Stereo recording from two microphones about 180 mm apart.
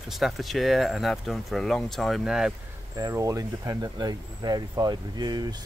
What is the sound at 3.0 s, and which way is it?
Speech, 20° right (ahead or behind).